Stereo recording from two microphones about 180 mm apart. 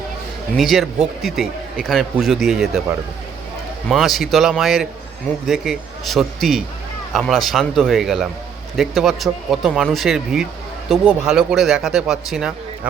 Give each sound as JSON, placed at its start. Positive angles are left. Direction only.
{"t": 0.5, "sound": "speech", "side_deg": 0}
{"t": 3.8, "sound": "speech", "side_deg": 0}